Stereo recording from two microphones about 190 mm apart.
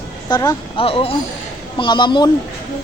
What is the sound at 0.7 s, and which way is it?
A man's voice, 30° left (ahead or behind).